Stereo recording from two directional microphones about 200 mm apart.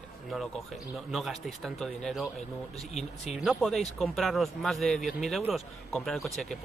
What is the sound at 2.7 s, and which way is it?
Speech, 35° left (ahead or behind).